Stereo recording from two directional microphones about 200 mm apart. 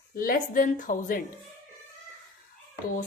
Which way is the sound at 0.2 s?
45° left (ahead or behind).